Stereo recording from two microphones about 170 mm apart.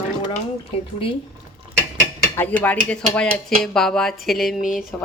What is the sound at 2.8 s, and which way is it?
Speech, 5° left (ahead or behind).